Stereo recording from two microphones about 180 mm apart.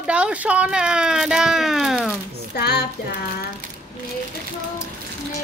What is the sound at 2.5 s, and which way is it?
Music, 65° left (ahead or behind).